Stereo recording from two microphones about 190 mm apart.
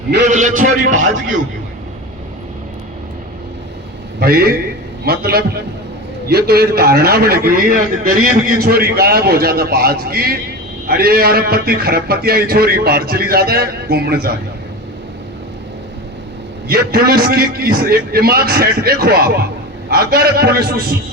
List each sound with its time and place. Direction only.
0.3 s speech: 40° right (ahead or behind)
4.2 s a man's voice: 55° right (ahead or behind)
16.6 s a man's voice: 55° right (ahead or behind)